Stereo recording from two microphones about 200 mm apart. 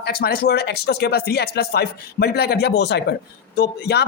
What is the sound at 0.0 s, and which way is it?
Speech, 50° left (ahead or behind).